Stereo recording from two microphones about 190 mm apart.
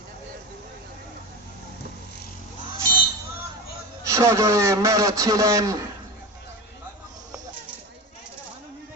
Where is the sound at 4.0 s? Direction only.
15° right (ahead or behind).